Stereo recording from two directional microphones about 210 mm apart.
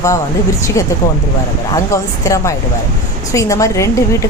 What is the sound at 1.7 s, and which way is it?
A woman's voice, 15° left (ahead or behind).